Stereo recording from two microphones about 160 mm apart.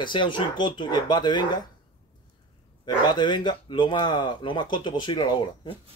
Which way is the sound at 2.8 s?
30° left (ahead or behind).